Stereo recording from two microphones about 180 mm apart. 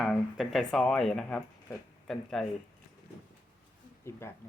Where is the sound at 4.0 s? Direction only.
15° left (ahead or behind).